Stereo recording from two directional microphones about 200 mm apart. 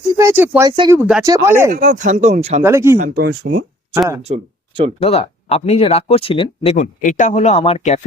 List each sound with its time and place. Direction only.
0.1 s speech: 15° right (ahead or behind)
1.7 s speech: 40° right (ahead or behind)
2.6 s speech: 15° right (ahead or behind)
3.0 s speech: 50° right (ahead or behind)
4.3 s speech: 40° right (ahead or behind)
4.9 s speech: 30° left (ahead or behind)